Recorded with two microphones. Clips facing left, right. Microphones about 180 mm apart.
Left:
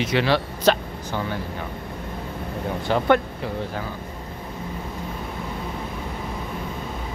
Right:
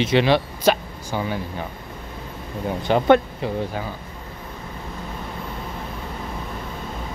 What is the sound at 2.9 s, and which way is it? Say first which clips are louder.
Speech: right 3 dB; 20° right (ahead or behind).